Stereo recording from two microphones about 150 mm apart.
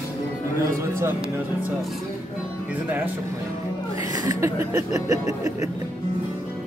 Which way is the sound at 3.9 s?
25° right (ahead or behind).